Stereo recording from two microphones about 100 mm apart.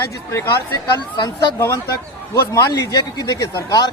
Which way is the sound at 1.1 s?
45° left (ahead or behind).